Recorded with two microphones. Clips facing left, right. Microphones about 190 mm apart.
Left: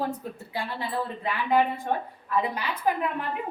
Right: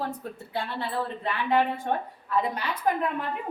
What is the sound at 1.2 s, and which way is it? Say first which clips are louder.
Speech: left 1 dB; 5° left (ahead or behind).